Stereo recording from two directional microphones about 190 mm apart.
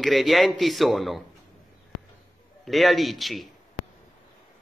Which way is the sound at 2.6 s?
Centre (ahead or behind).